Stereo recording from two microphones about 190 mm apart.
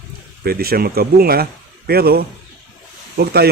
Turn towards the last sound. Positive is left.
turn(degrees=-55)  # may be behind; listen again after turning